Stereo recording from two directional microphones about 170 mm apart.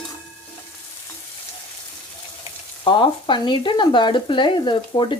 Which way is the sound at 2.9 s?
30° left (ahead or behind).